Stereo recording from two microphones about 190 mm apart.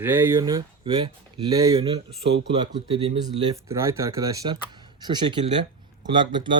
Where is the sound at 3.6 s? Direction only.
15° right (ahead or behind).